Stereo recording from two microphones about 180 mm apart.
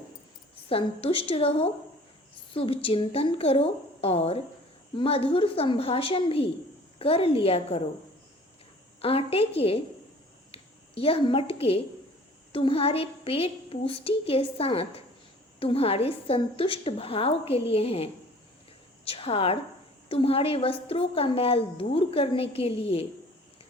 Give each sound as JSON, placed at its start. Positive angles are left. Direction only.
{"t": 0.7, "sound": "a woman's voice", "side_deg": 30}
{"t": 9.0, "sound": "a woman's voice", "side_deg": 30}